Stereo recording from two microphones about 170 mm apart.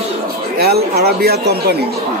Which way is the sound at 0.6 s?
65° right (ahead or behind).